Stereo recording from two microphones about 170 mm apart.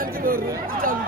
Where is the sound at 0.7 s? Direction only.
55° right (ahead or behind).